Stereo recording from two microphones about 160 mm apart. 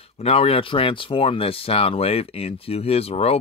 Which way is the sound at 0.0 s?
40° left (ahead or behind).